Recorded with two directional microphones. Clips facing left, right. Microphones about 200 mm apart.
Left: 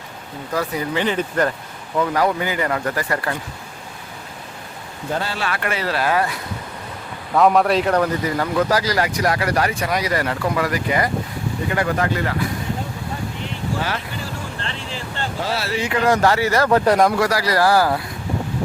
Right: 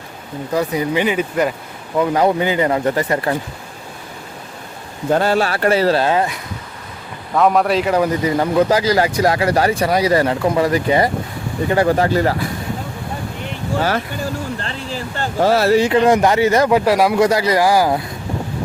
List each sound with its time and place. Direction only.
0.5 s speech: 20° right (ahead or behind)
2.0 s speech: 20° right (ahead or behind)
5.1 s speech: 50° right (ahead or behind)
5.5 s speech: 35° right (ahead or behind)
7.3 s a man's voice: centre (ahead or behind)
8.4 s speech: 20° right (ahead or behind)
15.2 s speech: 45° right (ahead or behind)
15.9 s speech: 20° right (ahead or behind)
17.2 s speech: 20° right (ahead or behind)